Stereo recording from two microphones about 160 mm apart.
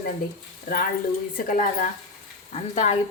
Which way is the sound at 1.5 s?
60° left (ahead or behind).